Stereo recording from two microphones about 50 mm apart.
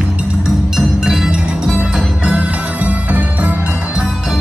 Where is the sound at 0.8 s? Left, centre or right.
Centre.